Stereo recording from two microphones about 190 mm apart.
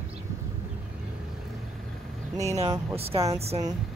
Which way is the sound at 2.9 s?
30° right (ahead or behind).